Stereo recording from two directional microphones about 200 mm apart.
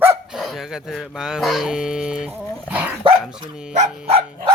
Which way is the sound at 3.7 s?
35° right (ahead or behind).